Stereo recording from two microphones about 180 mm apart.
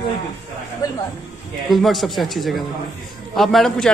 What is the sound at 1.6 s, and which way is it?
Speech, centre (ahead or behind).